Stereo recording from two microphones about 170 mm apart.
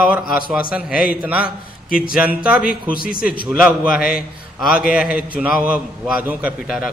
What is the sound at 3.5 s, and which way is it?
A man's voice, 5° right (ahead or behind).